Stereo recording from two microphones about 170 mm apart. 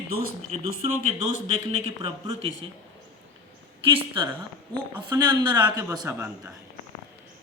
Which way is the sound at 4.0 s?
30° right (ahead or behind).